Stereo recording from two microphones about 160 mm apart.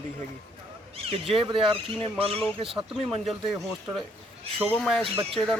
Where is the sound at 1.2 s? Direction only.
35° right (ahead or behind).